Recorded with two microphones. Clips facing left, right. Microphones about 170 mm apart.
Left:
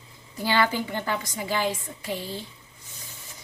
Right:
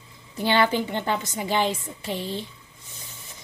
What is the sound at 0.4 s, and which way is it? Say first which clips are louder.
A woman's voice: right 3 dB; 25° right (ahead or behind).